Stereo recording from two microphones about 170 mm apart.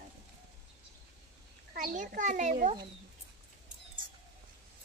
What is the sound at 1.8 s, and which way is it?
Speech, 50° right (ahead or behind).